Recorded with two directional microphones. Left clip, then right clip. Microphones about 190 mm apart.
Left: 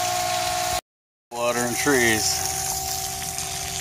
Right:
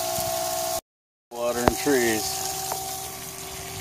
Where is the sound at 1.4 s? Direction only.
5° left (ahead or behind).